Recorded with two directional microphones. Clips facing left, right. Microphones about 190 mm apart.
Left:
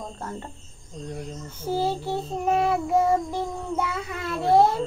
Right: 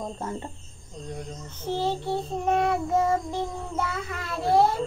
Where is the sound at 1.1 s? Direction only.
10° left (ahead or behind).